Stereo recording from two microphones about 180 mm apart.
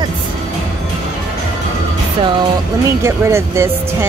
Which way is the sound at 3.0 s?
15° right (ahead or behind).